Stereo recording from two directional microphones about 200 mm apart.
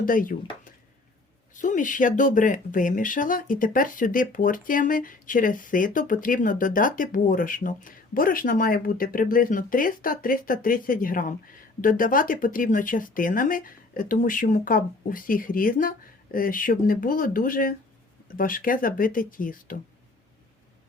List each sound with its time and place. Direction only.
0.0 s speech: 45° left (ahead or behind)
1.5 s speech: 40° left (ahead or behind)